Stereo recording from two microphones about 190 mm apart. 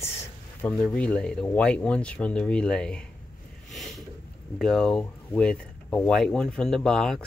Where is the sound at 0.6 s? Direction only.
5° left (ahead or behind).